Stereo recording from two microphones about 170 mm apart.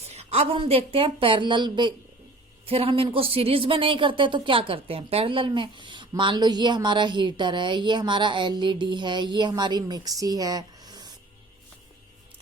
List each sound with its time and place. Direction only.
0.0 s a woman's voice: 40° right (ahead or behind)